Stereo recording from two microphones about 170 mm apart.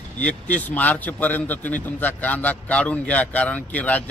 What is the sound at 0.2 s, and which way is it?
A man's voice, 10° left (ahead or behind).